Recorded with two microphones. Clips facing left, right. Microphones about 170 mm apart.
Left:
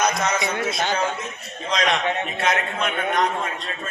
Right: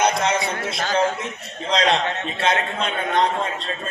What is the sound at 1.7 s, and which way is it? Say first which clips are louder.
A man's voice: right 2 dB; 30° right (ahead or behind).